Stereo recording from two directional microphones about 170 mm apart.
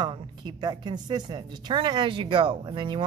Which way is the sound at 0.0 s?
25° right (ahead or behind).